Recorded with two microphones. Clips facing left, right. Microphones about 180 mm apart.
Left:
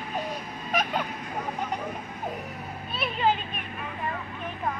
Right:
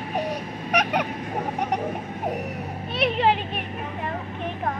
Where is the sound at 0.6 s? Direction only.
75° right (ahead or behind).